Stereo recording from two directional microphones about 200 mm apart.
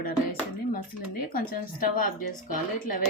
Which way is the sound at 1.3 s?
45° left (ahead or behind).